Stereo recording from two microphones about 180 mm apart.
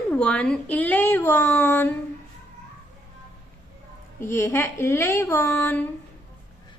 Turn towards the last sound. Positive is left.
turn(degrees=15)  # may be behind; listen again after turning